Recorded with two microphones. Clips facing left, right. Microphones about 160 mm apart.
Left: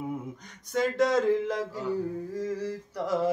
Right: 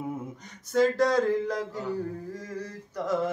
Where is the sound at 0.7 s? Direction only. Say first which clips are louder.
Right 2 dB; centre (ahead or behind).